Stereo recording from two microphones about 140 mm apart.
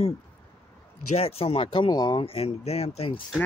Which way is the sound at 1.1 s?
45° left (ahead or behind).